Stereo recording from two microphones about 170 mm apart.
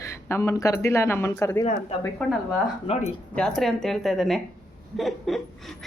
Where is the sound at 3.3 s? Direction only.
5° left (ahead or behind).